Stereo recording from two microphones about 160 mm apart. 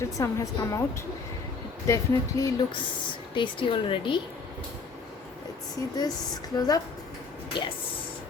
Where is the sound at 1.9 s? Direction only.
20° left (ahead or behind).